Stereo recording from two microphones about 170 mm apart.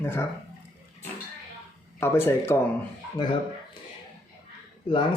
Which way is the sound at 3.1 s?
25° left (ahead or behind).